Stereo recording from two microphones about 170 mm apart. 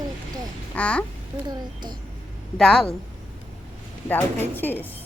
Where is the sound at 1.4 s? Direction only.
25° right (ahead or behind).